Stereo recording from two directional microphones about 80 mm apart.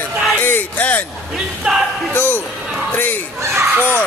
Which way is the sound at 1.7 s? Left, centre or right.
Centre.